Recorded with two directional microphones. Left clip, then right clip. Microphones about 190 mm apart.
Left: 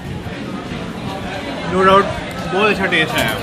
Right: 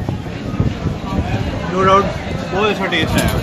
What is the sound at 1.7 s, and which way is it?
Speech, 20° left (ahead or behind).